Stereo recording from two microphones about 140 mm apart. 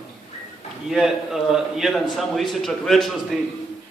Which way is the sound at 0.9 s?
Centre (ahead or behind).